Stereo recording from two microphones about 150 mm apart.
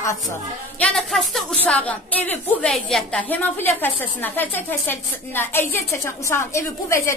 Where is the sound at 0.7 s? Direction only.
5° left (ahead or behind).